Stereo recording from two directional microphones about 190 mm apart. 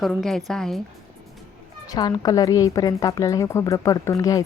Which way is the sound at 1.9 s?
20° left (ahead or behind).